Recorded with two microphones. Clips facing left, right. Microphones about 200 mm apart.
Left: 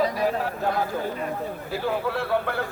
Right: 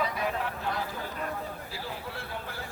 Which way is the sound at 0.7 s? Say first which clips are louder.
Left 8 dB; 55° left (ahead or behind).